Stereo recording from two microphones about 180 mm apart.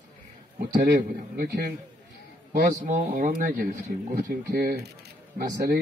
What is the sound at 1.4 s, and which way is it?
Speech, 55° right (ahead or behind).